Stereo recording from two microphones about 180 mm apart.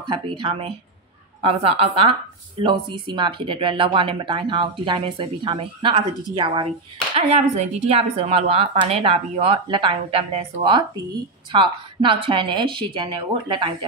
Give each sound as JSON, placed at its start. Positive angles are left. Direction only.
{"t": 0.1, "sound": "speech", "side_deg": -30}